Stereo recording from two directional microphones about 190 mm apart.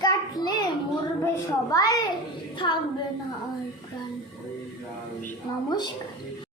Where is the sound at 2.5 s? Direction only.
25° left (ahead or behind).